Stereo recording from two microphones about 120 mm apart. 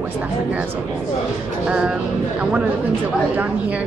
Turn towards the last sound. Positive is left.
turn(degrees=-10)  # may be behind; listen again after turning